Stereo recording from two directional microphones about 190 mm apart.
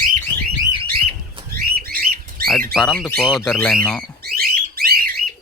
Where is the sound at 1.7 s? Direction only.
50° right (ahead or behind).